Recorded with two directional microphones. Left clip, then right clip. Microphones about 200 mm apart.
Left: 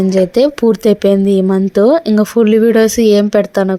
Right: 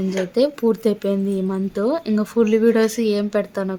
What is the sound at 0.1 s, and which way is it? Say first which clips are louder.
Speech: left 7 dB; 35° left (ahead or behind).